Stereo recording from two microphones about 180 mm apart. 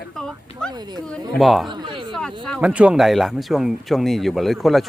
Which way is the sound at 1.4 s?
Centre (ahead or behind).